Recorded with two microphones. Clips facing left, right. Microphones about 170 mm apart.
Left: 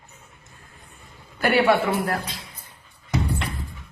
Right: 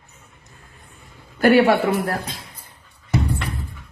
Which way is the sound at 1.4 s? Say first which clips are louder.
Right 4 dB; 45° right (ahead or behind).